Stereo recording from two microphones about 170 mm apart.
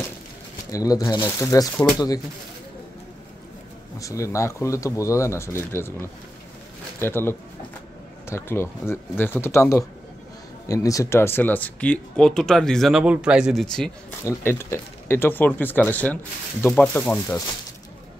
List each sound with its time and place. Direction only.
0.7 s speech: 20° left (ahead or behind)
4.0 s speech: 20° left (ahead or behind)
14.2 s speech: 15° left (ahead or behind)